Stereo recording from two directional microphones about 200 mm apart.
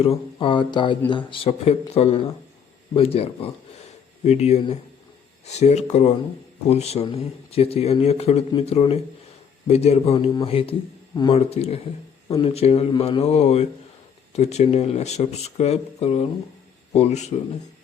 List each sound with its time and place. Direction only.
0.0 s speech: 25° left (ahead or behind)
11.3 s speech: 30° left (ahead or behind)